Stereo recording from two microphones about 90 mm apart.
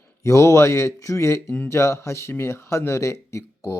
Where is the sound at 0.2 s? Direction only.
35° left (ahead or behind).